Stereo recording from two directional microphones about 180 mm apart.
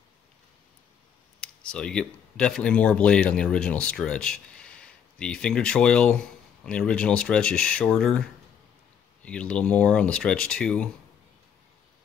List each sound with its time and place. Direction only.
1.4 s speech: 5° left (ahead or behind)